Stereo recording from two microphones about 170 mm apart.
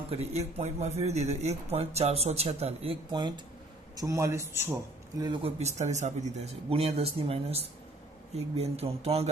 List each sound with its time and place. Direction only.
0.1 s a man's voice: 40° right (ahead or behind); by 5.3 s 15° right (ahead or behind)
5.4 s a man's voice: 40° right (ahead or behind)